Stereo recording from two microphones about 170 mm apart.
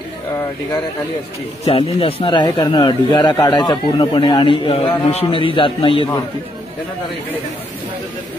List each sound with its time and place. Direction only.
1.7 s speech: 35° left (ahead or behind)